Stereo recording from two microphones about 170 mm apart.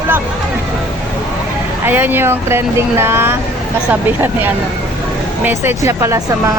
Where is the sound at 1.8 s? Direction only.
10° right (ahead or behind).